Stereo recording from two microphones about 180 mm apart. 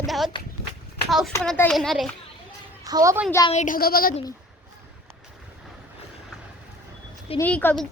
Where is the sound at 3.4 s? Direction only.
40° left (ahead or behind).